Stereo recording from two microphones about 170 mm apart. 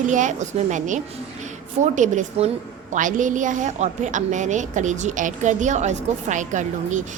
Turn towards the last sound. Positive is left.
turn(degrees=-45)  # may be behind; listen again after turning